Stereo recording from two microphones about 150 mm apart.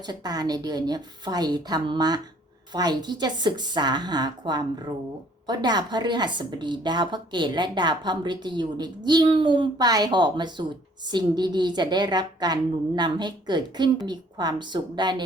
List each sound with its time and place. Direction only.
0.0 s a woman's voice: 25° right (ahead or behind)